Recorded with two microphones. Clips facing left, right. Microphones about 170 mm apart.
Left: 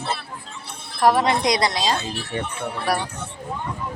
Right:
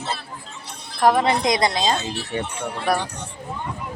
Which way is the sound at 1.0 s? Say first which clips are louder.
Even; 50° right (ahead or behind).